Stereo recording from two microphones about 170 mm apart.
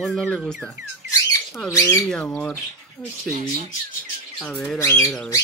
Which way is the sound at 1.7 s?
20° left (ahead or behind).